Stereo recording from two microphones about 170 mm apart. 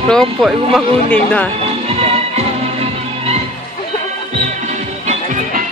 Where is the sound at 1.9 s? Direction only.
35° right (ahead or behind).